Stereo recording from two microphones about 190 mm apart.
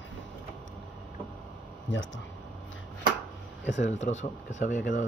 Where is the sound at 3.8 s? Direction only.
40° left (ahead or behind).